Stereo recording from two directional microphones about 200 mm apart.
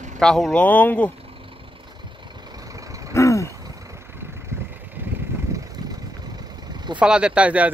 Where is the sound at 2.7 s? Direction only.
15° right (ahead or behind).